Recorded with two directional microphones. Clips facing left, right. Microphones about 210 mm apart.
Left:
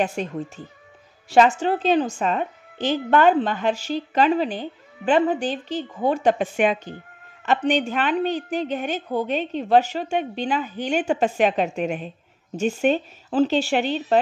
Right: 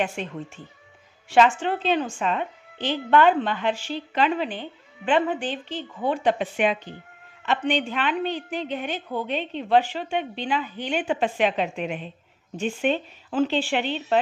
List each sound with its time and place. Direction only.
0.0 s a woman's voice: 40° left (ahead or behind)